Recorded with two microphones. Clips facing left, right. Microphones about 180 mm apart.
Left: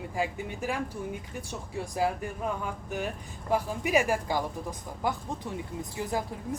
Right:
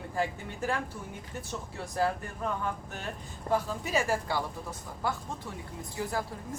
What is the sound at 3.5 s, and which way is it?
Speech, 15° left (ahead or behind).